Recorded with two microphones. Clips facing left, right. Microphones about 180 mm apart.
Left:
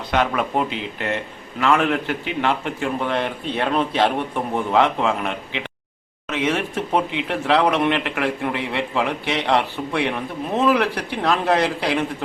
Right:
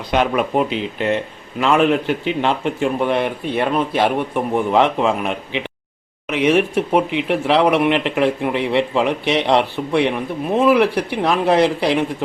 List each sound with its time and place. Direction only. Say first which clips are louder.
0.1 s speech: right 3 dB; 20° right (ahead or behind)